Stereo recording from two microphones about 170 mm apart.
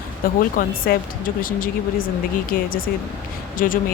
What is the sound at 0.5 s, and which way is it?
Speech, 60° left (ahead or behind).